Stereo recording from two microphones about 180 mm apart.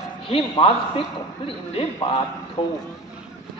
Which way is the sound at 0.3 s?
30° left (ahead or behind).